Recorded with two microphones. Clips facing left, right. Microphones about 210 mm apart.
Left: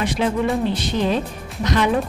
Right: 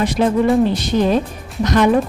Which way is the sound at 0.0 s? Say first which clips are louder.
Right 5 dB; 40° right (ahead or behind).